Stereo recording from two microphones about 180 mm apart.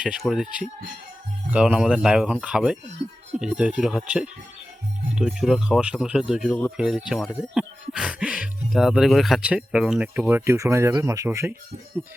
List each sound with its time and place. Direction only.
0.0 s speech: centre (ahead or behind)
3.0 s speech: 35° right (ahead or behind)
3.4 s speech: 5° right (ahead or behind)